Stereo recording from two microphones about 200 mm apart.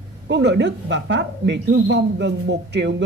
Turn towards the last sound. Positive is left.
turn(degrees=-60)  # may be behind; listen again after turning